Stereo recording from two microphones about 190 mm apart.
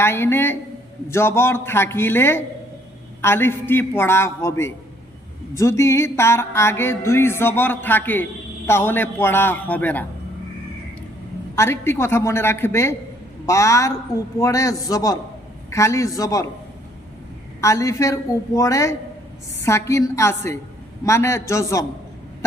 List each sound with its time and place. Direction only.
0.0 s music: 10° left (ahead or behind)
11.5 s music: 15° left (ahead or behind)
17.6 s music: 15° left (ahead or behind)